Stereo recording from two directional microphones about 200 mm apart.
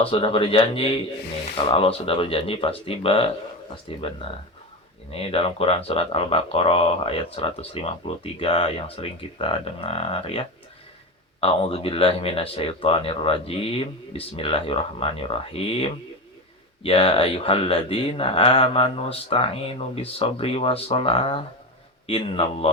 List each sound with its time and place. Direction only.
0.0 s speech: 25° left (ahead or behind)